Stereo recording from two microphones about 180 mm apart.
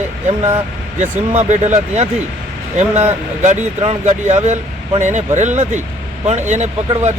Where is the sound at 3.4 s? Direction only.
40° right (ahead or behind).